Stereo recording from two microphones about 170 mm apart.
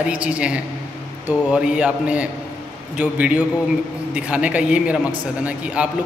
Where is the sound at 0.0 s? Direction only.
5° right (ahead or behind).